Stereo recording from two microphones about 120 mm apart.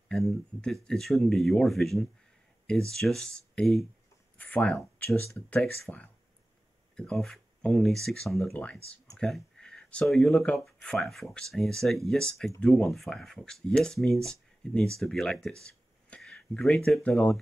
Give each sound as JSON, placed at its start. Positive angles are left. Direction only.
{"t": 0.1, "sound": "speech", "side_deg": 5}